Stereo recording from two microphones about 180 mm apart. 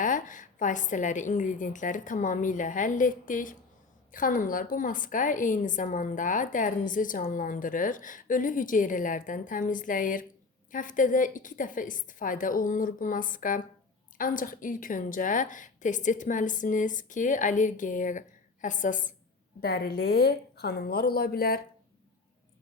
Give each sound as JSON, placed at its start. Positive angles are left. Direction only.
{"t": 0.0, "sound": "a woman's voice", "side_deg": 45}
{"t": 19.6, "sound": "a woman's voice", "side_deg": 60}